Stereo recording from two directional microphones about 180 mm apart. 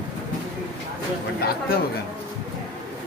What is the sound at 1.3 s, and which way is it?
Chatter, 55° left (ahead or behind).